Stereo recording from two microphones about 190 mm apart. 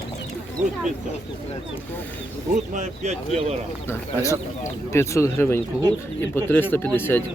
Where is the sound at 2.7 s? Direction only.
40° right (ahead or behind).